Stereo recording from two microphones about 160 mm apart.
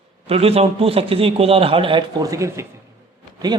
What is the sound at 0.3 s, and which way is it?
A man's voice, 40° right (ahead or behind).